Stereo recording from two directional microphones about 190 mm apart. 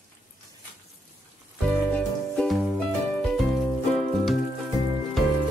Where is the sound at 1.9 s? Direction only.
5° left (ahead or behind).